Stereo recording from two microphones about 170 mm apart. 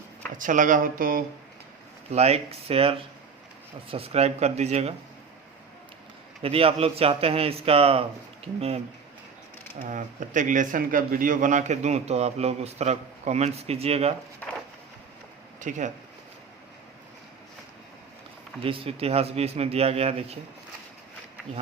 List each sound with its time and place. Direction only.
0.3 s speech: 50° right (ahead or behind)
2.1 s a man's voice: 40° right (ahead or behind)
6.4 s a man's voice: 35° right (ahead or behind)
9.8 s a man's voice: 50° right (ahead or behind)
14.4 s a sound: 10° left (ahead or behind)
15.6 s speech: 45° right (ahead or behind)
18.6 s a man's voice: 35° right (ahead or behind)